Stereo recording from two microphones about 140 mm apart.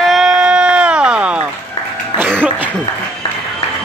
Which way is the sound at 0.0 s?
Centre (ahead or behind).